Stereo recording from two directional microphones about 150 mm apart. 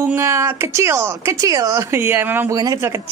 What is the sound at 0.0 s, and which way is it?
Speech, 15° right (ahead or behind).